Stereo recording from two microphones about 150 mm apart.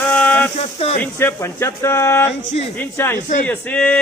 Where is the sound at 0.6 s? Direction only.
40° left (ahead or behind).